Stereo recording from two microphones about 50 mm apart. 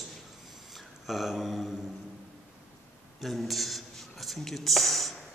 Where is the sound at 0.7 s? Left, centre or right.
Centre.